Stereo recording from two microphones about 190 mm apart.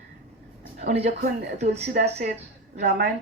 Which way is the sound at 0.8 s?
40° right (ahead or behind).